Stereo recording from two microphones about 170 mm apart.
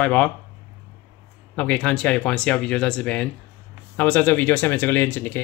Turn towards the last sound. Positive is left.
turn(degrees=10)  # may be behind; listen again after turning